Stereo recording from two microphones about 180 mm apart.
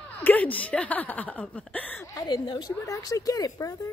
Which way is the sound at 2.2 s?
20° left (ahead or behind).